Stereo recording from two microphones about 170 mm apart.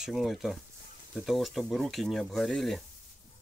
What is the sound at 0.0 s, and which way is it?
Speech, centre (ahead or behind).